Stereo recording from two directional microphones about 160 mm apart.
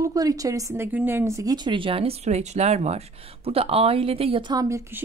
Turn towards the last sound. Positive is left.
turn(degrees=-20)  # may be behind; listen again after turning